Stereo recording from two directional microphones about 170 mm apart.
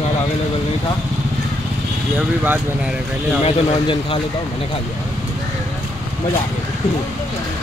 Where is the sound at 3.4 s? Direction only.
30° left (ahead or behind).